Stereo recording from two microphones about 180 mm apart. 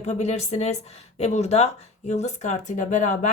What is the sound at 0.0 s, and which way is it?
A woman's voice, 40° left (ahead or behind).